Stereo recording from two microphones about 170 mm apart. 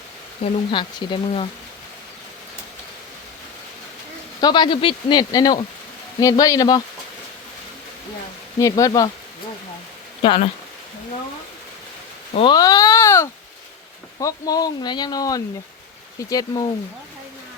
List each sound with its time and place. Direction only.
0.4 s a man's voice: 30° left (ahead or behind)
4.4 s a man's voice: 25° left (ahead or behind)
8.5 s a man's voice: 20° left (ahead or behind)
10.2 s speech: 35° left (ahead or behind)
12.3 s cat: 35° left (ahead or behind)
12.5 s a sound: 20° left (ahead or behind)
14.2 s a man's voice: 20° left (ahead or behind)